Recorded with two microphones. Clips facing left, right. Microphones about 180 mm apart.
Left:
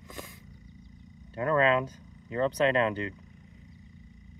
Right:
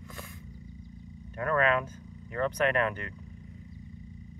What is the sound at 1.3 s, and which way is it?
Speech, 25° left (ahead or behind).